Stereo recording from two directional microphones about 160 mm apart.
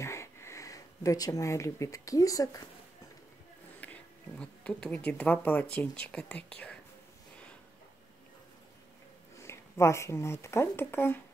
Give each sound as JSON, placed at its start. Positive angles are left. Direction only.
{"t": 0.0, "sound": "speech", "side_deg": 15}
{"t": 3.8, "sound": "a woman's voice", "side_deg": 10}
{"t": 9.4, "sound": "speech", "side_deg": 15}